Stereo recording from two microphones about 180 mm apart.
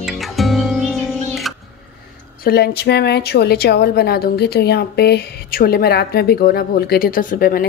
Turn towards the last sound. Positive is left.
turn(degrees=55)  # may be behind; listen again after turning